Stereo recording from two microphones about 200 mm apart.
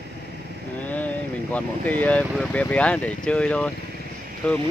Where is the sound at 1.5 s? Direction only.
10° left (ahead or behind).